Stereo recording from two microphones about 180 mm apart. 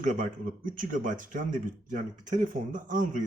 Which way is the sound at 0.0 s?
45° right (ahead or behind).